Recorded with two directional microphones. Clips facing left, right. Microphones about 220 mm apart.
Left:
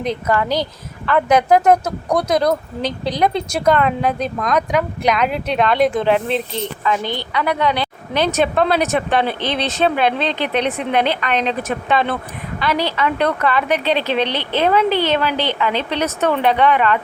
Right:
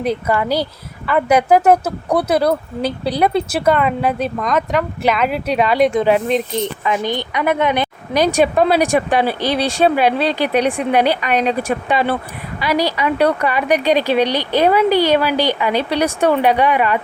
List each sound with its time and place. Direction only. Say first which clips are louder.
0.0 s a woman's voice: right 1 dB; 10° right (ahead or behind)
6.6 s a woman's voice: right 2 dB; 15° right (ahead or behind)